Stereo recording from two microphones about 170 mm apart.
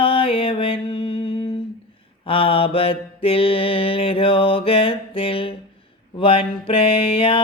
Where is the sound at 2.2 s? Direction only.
30° left (ahead or behind).